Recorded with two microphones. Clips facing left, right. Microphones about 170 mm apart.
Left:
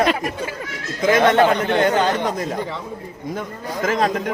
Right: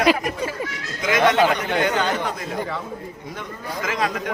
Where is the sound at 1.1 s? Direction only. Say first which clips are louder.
Left 3 dB; 50° left (ahead or behind).